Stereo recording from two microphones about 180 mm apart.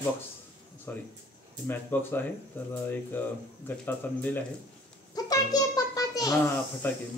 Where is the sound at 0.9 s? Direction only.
10° left (ahead or behind).